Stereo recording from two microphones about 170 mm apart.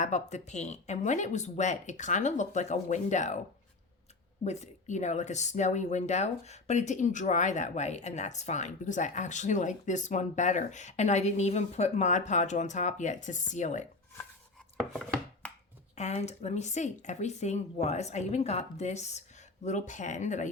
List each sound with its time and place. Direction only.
0.0 s speech: 45° left (ahead or behind)
4.4 s speech: 40° left (ahead or behind)
16.0 s speech: 40° left (ahead or behind)